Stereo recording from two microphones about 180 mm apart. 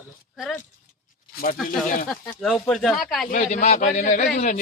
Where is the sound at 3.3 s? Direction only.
40° left (ahead or behind).